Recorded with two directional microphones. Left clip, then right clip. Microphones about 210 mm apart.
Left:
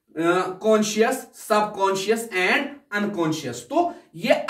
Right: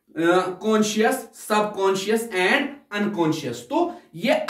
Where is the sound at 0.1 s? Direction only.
20° right (ahead or behind).